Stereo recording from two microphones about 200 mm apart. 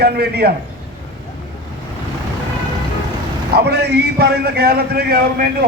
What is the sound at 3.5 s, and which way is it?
A man's voice, 55° right (ahead or behind).